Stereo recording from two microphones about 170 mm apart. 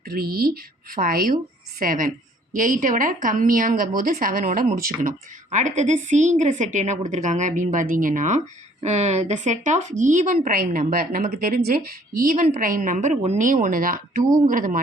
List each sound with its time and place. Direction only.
0.0 s a woman's voice: 65° right (ahead or behind)